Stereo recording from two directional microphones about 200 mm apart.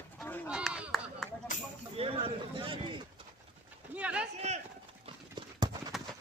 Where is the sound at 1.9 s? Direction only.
30° right (ahead or behind).